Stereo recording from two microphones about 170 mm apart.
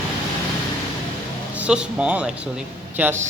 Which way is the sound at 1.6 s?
5° right (ahead or behind).